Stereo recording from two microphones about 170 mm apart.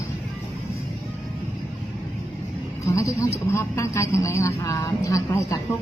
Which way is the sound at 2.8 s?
15° left (ahead or behind).